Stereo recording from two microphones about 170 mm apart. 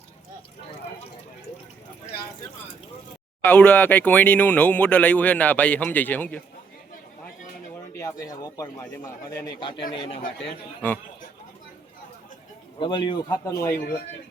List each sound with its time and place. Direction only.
3.4 s speech: 10° left (ahead or behind)
7.9 s a man's voice: 20° left (ahead or behind)
12.8 s a man's voice: 30° left (ahead or behind)
13.4 s speech: 15° left (ahead or behind)